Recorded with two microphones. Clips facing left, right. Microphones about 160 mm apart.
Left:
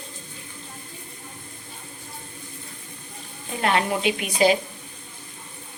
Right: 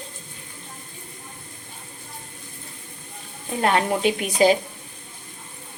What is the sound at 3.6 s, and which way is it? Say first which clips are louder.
Speech: right 2 dB; 35° right (ahead or behind).